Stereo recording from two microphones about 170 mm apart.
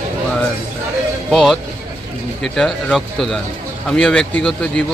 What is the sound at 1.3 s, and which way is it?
Speech, centre (ahead or behind).